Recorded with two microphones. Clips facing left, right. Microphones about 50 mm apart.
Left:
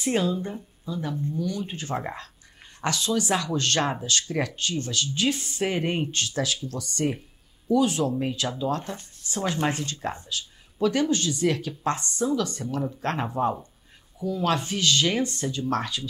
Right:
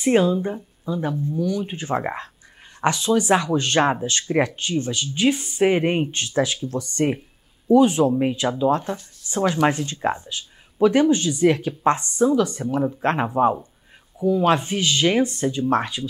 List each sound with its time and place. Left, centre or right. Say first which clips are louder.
0.0 s speech: right 7 dB; right